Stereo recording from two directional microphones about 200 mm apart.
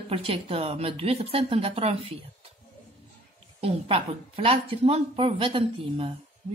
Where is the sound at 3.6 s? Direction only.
30° right (ahead or behind).